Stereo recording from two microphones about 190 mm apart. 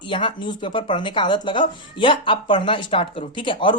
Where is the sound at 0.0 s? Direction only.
25° left (ahead or behind).